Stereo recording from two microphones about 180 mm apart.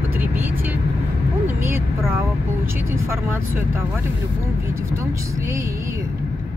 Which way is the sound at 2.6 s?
15° right (ahead or behind).